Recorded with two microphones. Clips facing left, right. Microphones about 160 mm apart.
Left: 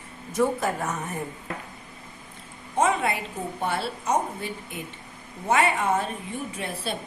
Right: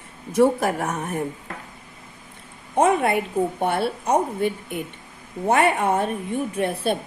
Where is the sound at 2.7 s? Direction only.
55° right (ahead or behind).